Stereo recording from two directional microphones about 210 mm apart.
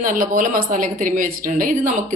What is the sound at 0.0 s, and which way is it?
A woman's voice, 40° right (ahead or behind).